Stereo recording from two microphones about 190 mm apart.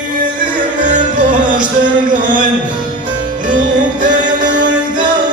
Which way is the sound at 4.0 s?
45° right (ahead or behind).